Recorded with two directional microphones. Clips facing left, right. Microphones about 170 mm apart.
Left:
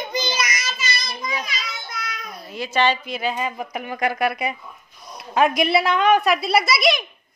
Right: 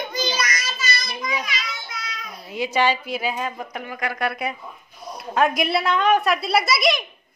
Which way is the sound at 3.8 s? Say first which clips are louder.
Left 6 dB; 25° left (ahead or behind).